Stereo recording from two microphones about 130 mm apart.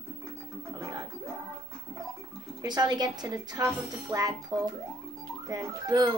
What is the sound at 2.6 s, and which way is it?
A woman's voice, 30° right (ahead or behind).